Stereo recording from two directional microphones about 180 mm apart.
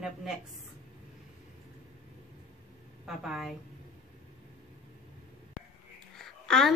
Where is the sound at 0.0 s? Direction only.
5° right (ahead or behind).